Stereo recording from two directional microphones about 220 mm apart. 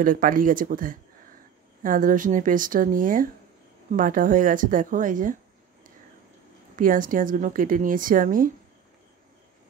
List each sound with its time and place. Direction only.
0.0 s a woman's voice: 40° right (ahead or behind)
6.8 s a woman's voice: 40° right (ahead or behind)